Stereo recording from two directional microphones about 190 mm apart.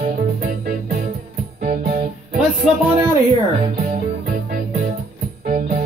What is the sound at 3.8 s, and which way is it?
Music, 50° right (ahead or behind).